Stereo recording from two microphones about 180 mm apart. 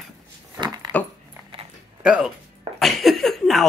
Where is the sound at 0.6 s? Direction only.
20° right (ahead or behind).